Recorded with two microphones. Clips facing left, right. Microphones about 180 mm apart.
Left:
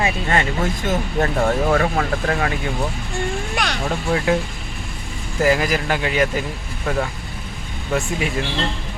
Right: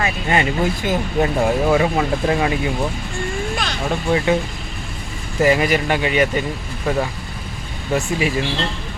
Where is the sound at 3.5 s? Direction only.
65° left (ahead or behind).